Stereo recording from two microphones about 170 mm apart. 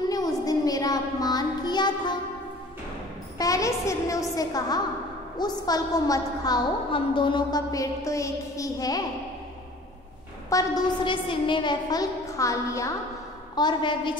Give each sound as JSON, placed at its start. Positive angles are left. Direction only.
{"t": 0.1, "sound": "a sound", "side_deg": 20}
{"t": 3.3, "sound": "a woman's voice", "side_deg": 20}
{"t": 10.5, "sound": "a woman's voice", "side_deg": 20}